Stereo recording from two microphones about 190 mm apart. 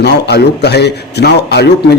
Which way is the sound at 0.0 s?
60° left (ahead or behind).